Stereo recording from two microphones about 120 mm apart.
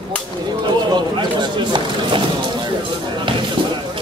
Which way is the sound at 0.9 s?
40° right (ahead or behind).